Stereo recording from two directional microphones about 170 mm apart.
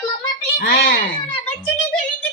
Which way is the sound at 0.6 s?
65° left (ahead or behind).